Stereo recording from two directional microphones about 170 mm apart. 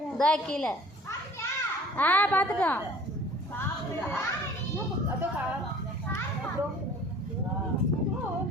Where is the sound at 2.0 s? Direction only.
10° left (ahead or behind).